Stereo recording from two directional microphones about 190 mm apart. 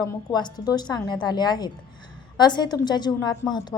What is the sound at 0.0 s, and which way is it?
A woman's voice, 20° left (ahead or behind).